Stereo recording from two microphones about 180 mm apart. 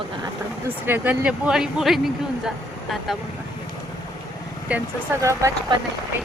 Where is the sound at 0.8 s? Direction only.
10° right (ahead or behind).